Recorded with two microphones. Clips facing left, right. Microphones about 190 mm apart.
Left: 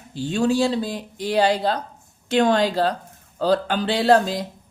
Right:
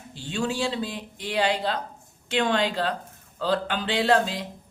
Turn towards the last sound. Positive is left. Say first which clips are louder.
# left 5 dB
turn(degrees=40)  # may be behind; listen again after turning